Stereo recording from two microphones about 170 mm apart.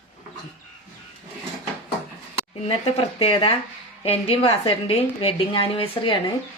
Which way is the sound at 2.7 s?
35° left (ahead or behind).